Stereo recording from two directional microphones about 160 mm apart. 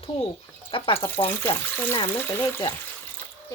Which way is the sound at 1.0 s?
15° left (ahead or behind).